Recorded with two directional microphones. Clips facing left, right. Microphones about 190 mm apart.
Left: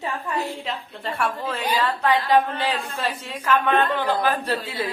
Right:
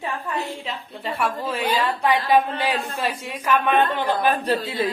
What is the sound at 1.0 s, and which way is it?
A man's voice, 5° right (ahead or behind).